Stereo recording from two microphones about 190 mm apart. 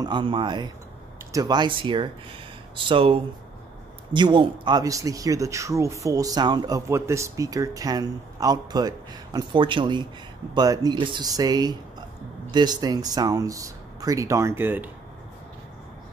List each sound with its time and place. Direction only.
0.0 s speech: 25° right (ahead or behind)